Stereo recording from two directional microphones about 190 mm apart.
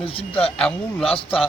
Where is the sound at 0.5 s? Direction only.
5° left (ahead or behind).